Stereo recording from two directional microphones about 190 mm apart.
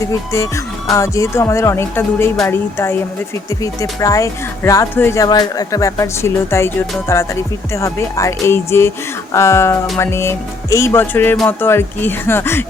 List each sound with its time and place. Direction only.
0.1 s speech: 15° left (ahead or behind)